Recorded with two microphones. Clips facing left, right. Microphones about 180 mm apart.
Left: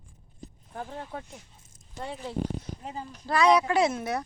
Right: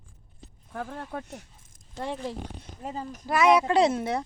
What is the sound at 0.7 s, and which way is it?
Speech, 60° right (ahead or behind).